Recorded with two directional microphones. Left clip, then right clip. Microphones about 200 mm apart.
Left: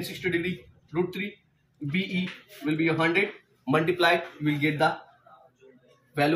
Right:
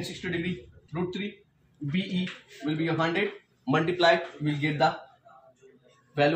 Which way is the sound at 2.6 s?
10° right (ahead or behind).